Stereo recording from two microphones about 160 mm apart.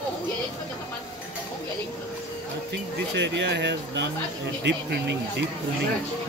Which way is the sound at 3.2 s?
90° right.